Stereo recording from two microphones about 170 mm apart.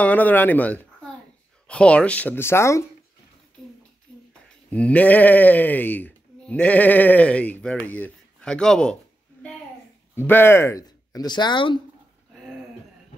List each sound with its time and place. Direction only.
0.0 s speech: 10° left (ahead or behind)
4.6 s speech: 5° left (ahead or behind)
10.1 s speech: 15° left (ahead or behind); by 11.8 s 30° left (ahead or behind)